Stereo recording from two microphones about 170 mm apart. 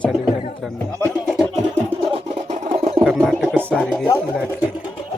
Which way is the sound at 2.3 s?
40° right (ahead or behind).